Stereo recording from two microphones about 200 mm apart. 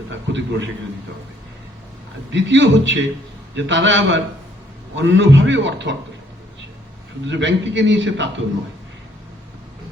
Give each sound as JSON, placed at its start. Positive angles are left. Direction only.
{"t": 0.1, "sound": "a man's voice", "side_deg": -65}
{"t": 2.3, "sound": "a man's voice", "side_deg": -65}
{"t": 7.3, "sound": "a man's voice", "side_deg": -65}